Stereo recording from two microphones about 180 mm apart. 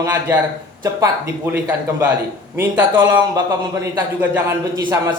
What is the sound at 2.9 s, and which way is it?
Speech, 20° right (ahead or behind).